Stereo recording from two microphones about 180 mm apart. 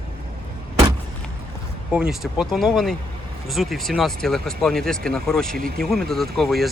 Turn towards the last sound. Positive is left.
turn(degrees=0)  # may be behind; listen again after turning